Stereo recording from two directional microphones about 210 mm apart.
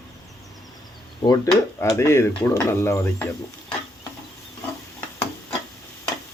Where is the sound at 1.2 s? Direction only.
20° left (ahead or behind).